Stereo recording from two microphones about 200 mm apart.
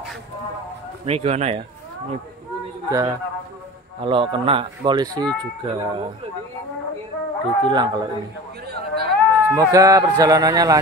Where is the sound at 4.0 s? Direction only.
25° right (ahead or behind).